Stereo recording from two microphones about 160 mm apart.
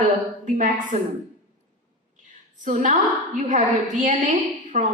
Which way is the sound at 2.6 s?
50° right (ahead or behind).